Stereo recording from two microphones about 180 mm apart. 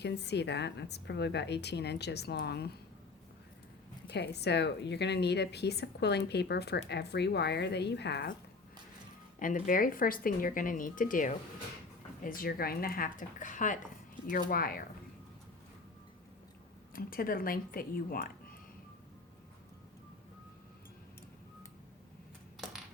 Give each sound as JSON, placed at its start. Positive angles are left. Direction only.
{"t": 0.0, "sound": "a woman's voice", "side_deg": 70}
{"t": 4.1, "sound": "a woman's voice", "side_deg": 65}
{"t": 9.4, "sound": "speech", "side_deg": 45}
{"t": 16.9, "sound": "speech", "side_deg": 55}